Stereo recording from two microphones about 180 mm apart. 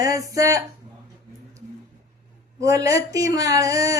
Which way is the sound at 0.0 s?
20° right (ahead or behind).